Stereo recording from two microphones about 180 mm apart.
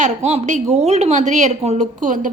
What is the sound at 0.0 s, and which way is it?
A woman's voice, 40° right (ahead or behind).